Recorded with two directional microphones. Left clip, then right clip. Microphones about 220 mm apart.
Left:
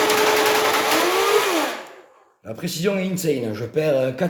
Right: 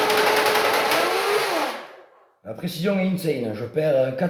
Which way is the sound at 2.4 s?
35° left (ahead or behind).